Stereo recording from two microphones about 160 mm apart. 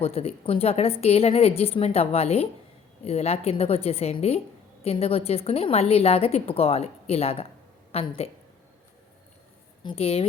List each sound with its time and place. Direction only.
0.0 s a woman's voice: 40° left (ahead or behind)
9.8 s a woman's voice: 35° left (ahead or behind)